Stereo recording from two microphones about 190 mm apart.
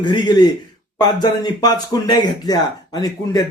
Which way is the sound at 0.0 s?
25° left (ahead or behind).